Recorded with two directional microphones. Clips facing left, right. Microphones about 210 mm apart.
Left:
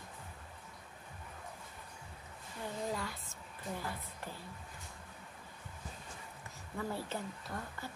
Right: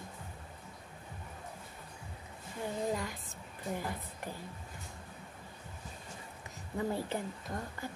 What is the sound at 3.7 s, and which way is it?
Speech, 15° right (ahead or behind).